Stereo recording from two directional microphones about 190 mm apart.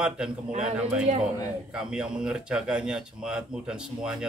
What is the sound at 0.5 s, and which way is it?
Speech, 40° right (ahead or behind).